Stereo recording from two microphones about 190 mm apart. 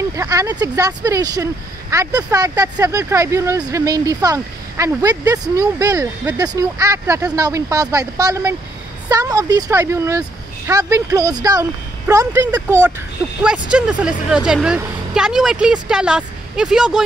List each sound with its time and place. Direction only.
0.1 s a woman's voice: 15° right (ahead or behind)